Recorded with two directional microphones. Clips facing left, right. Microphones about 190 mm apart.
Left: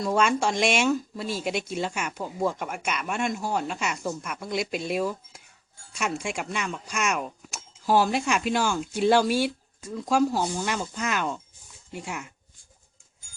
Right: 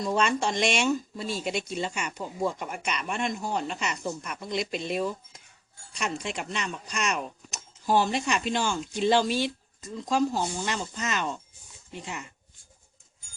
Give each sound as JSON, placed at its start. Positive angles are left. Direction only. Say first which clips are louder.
{"t": 0.0, "sound": "speech", "louder": "left 2 dB", "side_deg": 5}